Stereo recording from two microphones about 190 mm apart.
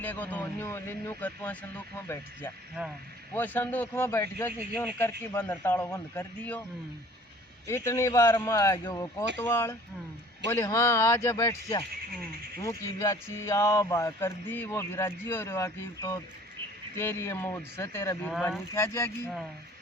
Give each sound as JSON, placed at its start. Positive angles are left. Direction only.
{"t": 0.0, "sound": "speech", "side_deg": 10}
{"t": 7.7, "sound": "speech", "side_deg": 15}
{"t": 18.3, "sound": "speech", "side_deg": 0}
{"t": 18.7, "sound": "speech", "side_deg": 15}